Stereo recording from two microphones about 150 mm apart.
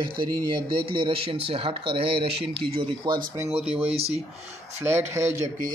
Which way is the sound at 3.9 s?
45° right (ahead or behind).